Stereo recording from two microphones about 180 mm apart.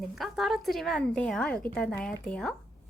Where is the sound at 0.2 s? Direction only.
Centre (ahead or behind).